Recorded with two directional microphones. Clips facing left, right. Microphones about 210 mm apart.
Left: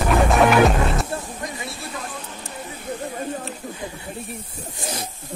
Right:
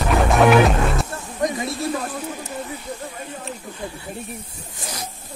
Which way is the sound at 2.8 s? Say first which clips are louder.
Left 3 dB; 45° left (ahead or behind).